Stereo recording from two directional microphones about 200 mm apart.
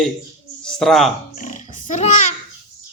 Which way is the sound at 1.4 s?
35° left (ahead or behind).